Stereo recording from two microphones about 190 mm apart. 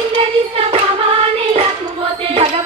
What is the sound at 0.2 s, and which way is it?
Hands, 30° right (ahead or behind).